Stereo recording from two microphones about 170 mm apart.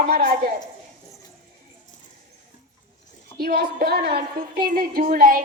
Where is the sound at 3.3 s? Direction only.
65° right (ahead or behind).